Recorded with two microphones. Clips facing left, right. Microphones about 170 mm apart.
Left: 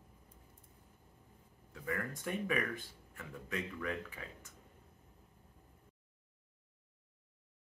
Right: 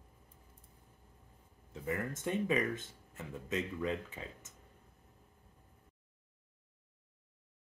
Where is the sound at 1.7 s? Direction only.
25° right (ahead or behind).